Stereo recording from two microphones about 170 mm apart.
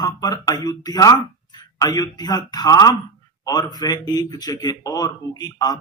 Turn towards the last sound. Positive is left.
turn(degrees=25)  # may be behind; listen again after turning